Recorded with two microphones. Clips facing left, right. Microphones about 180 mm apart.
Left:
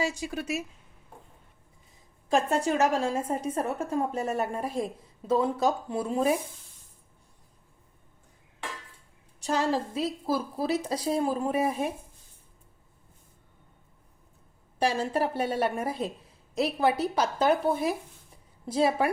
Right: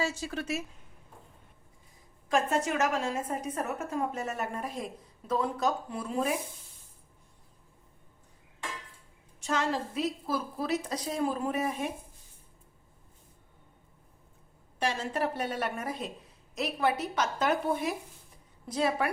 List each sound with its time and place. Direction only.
0.0 s a woman's voice: 15° left (ahead or behind)
2.3 s a woman's voice: 30° left (ahead or behind)
9.4 s a woman's voice: 35° left (ahead or behind)
14.8 s a woman's voice: 35° left (ahead or behind)